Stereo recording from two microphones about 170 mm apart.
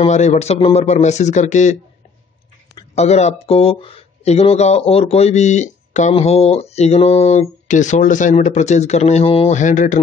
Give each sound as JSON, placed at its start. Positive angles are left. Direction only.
{"t": 0.0, "sound": "speech", "side_deg": 40}
{"t": 2.9, "sound": "speech", "side_deg": 40}